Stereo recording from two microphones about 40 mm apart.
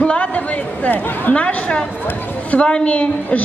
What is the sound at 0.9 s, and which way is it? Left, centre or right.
Speech, left.